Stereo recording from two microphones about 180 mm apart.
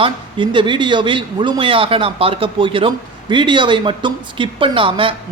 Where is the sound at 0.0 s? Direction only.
25° right (ahead or behind).